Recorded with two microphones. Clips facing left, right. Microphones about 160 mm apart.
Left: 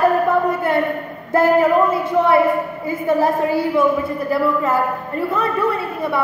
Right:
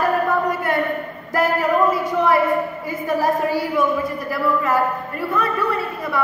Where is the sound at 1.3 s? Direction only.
30° left (ahead or behind).